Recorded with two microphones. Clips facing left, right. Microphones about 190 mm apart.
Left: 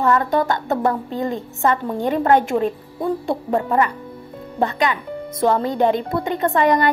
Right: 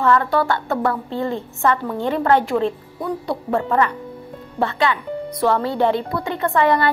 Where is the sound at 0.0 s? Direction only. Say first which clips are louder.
Even; 20° left (ahead or behind).